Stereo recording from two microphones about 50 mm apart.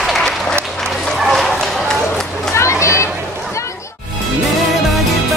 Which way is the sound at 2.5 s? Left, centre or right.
Left.